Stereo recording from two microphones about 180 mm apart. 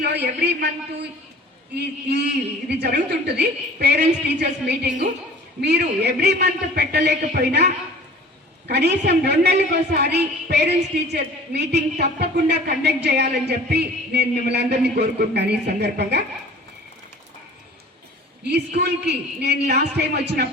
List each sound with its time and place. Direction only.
0.0 s a woman's voice: 65° right (ahead or behind)
18.8 s a woman's voice: 70° right (ahead or behind)